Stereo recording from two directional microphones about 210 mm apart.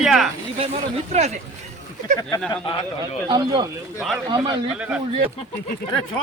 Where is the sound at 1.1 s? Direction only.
35° right (ahead or behind).